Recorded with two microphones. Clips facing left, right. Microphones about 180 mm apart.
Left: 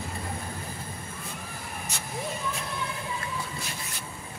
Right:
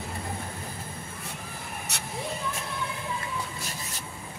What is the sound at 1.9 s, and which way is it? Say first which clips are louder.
Vehicle: even; 70° right (ahead or behind).